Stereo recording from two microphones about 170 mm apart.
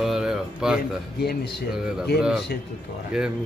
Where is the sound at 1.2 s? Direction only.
70° left (ahead or behind).